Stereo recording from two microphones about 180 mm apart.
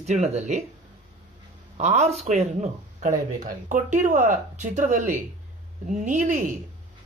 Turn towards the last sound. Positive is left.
turn(degrees=-45)  # may be behind; listen again after turning